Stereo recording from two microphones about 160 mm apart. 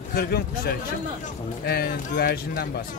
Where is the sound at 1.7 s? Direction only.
80° left.